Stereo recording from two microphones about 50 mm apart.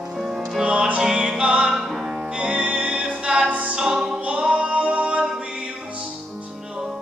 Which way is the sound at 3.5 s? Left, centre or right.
Right.